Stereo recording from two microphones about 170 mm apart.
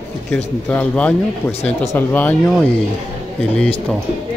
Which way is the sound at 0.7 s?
10° left (ahead or behind).